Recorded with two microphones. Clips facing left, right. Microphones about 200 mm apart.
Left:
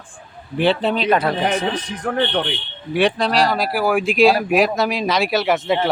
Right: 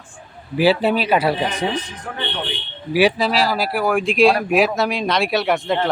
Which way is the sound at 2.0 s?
60° left (ahead or behind).